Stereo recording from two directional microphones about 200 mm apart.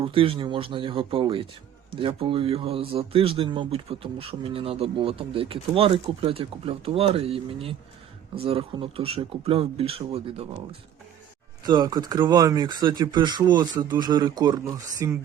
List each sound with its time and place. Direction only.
0.0 s speech: 25° right (ahead or behind)